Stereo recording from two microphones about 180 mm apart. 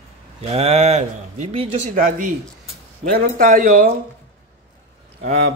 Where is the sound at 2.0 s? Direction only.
50° right (ahead or behind).